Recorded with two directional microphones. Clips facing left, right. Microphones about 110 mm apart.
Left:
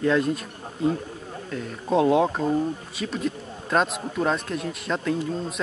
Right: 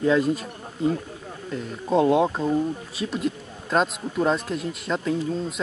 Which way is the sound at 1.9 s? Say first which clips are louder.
Even; centre (ahead or behind).